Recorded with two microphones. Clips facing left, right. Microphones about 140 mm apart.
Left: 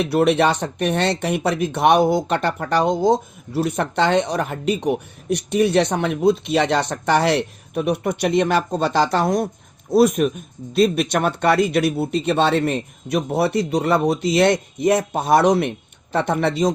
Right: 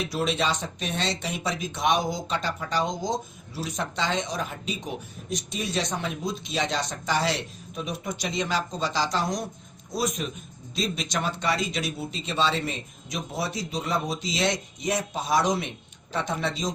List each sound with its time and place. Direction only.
0.0 s speech: 60° left (ahead or behind)